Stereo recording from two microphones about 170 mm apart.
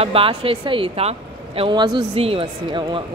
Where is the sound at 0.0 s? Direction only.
35° right (ahead or behind).